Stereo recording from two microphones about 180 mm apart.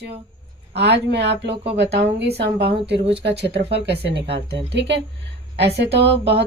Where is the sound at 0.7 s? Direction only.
70° right (ahead or behind).